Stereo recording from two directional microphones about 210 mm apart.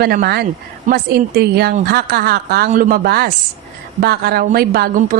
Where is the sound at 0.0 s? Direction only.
45° right (ahead or behind).